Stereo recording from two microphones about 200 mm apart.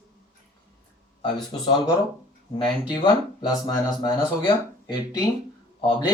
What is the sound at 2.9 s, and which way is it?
Speech, 20° left (ahead or behind).